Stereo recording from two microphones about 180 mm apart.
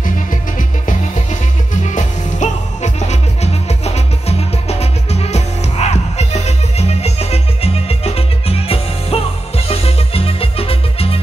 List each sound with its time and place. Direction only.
1.8 s music: 40° left (ahead or behind)